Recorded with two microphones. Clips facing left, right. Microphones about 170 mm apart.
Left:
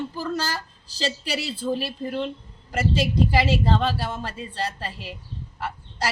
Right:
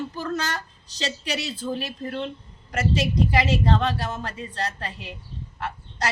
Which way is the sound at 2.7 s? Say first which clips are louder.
Left 1 dB; 30° left (ahead or behind).